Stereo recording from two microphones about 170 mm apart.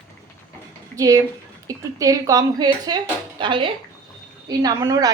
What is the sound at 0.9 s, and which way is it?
Speech, 20° right (ahead or behind).